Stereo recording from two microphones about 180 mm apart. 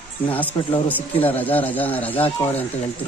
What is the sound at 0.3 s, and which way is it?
Speech, 10° left (ahead or behind).